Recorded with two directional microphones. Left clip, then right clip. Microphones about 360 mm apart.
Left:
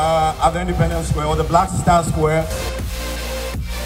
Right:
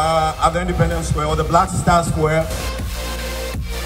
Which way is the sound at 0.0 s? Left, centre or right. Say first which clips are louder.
Even; left.